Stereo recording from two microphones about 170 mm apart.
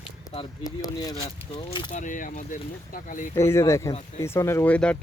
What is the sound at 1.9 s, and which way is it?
Speech, 50° left (ahead or behind).